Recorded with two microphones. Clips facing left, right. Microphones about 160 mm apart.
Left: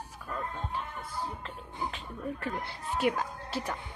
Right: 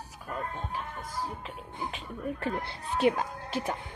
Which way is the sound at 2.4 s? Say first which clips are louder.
Right 3 dB; 25° right (ahead or behind).